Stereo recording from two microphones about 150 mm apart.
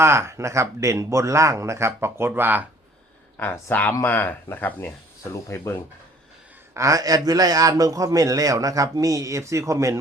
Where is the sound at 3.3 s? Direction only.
15° left (ahead or behind).